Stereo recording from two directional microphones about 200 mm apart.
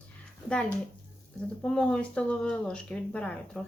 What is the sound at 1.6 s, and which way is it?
A woman's voice, 5° left (ahead or behind).